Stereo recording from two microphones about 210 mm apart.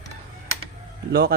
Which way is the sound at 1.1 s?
50° right (ahead or behind).